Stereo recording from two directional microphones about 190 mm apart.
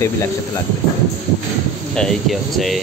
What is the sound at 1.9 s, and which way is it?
Speech, centre (ahead or behind).